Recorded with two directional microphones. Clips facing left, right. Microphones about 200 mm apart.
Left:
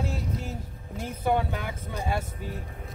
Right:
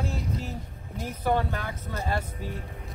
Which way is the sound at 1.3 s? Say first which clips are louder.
Even; 10° left (ahead or behind).